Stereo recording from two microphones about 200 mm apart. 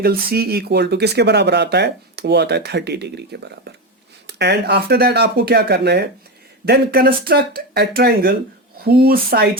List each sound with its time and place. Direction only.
0.0 s speech: 50° right (ahead or behind)